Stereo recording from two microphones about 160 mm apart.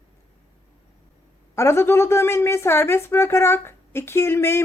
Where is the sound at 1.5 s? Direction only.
15° left (ahead or behind).